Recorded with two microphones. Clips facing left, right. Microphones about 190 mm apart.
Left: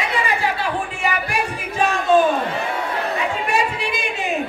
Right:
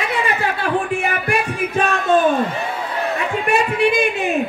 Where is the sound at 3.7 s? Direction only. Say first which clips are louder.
Right 9 dB; 55° right (ahead or behind).